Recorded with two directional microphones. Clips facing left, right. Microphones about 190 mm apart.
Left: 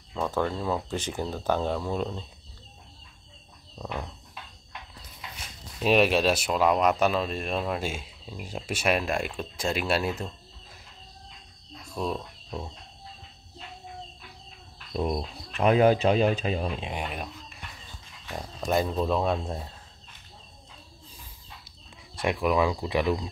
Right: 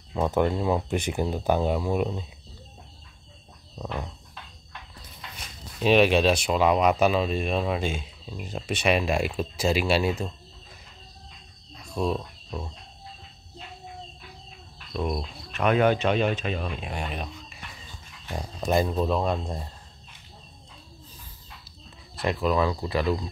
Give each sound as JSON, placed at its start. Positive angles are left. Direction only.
{"t": 0.1, "sound": "speech", "side_deg": -20}
{"t": 3.7, "sound": "a sound", "side_deg": -5}
{"t": 5.8, "sound": "speech", "side_deg": 5}
{"t": 11.8, "sound": "cricket", "side_deg": 5}
{"t": 15.0, "sound": "speech", "side_deg": 30}
{"t": 16.9, "sound": "speech", "side_deg": 5}
{"t": 22.2, "sound": "speech", "side_deg": 10}